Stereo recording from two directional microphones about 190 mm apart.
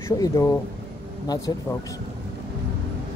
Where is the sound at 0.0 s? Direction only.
15° left (ahead or behind).